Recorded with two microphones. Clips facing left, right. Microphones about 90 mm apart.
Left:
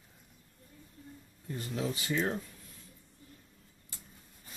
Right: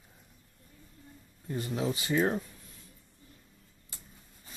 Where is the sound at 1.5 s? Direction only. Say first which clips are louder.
Right 3 dB; 20° right (ahead or behind).